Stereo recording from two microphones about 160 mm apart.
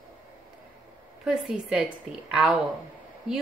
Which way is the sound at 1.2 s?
5° right (ahead or behind).